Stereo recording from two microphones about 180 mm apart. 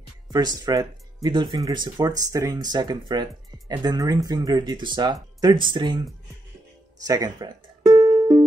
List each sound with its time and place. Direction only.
0.3 s speech: 20° right (ahead or behind)
7.1 s music: 20° right (ahead or behind)